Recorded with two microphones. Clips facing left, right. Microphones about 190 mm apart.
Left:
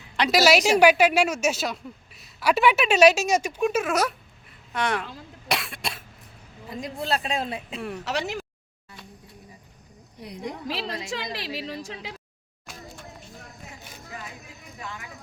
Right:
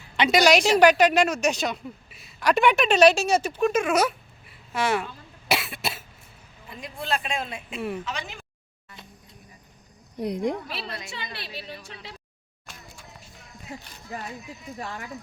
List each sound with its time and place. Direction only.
0.2 s speech: 5° left (ahead or behind)
5.5 s cough: 5° right (ahead or behind)
6.7 s speech: 35° left (ahead or behind)
7.8 s speech: 5° right (ahead or behind)
8.0 s speech: 75° left (ahead or behind)
10.2 s speech: 50° right (ahead or behind)
10.7 s a woman's voice: 90° left
14.1 s speech: 40° right (ahead or behind)